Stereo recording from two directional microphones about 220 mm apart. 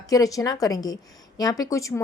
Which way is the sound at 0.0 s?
15° left (ahead or behind).